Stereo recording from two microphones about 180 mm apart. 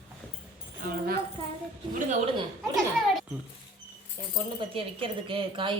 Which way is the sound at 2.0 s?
40° right (ahead or behind).